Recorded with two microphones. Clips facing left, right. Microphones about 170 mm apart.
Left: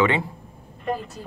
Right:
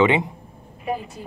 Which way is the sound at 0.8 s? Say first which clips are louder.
Even; 10° right (ahead or behind).